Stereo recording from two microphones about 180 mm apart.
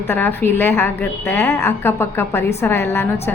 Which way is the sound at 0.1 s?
10° left (ahead or behind).